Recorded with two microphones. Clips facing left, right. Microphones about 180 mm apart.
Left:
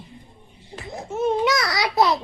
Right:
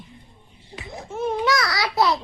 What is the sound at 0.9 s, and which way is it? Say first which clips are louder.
A child's voice: left 3 dB; 25° left (ahead or behind).